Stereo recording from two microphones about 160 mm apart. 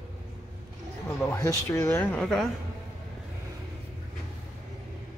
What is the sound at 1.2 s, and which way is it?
Speech, 20° left (ahead or behind).